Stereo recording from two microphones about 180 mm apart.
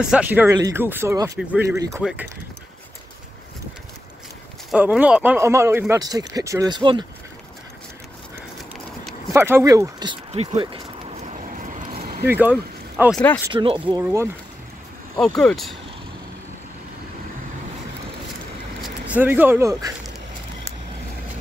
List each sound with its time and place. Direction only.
0.0 s speech: 5° right (ahead or behind)
4.6 s speech: 5° right (ahead or behind); by 7.1 s 25° right (ahead or behind)
9.3 s speech: 15° right (ahead or behind)
10.3 s speech: 35° right (ahead or behind)
11.5 s vehicle: 45° right (ahead or behind)
12.3 s speech: 10° right (ahead or behind)
12.9 s speech: centre (ahead or behind)
13.5 s speech: 25° right (ahead or behind)
14.0 s speech: 15° right (ahead or behind)
15.1 s speech: 5° left (ahead or behind)
18.8 s speech: 10° right (ahead or behind)